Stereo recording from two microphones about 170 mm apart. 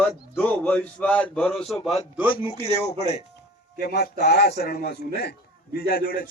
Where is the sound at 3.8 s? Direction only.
75° left (ahead or behind).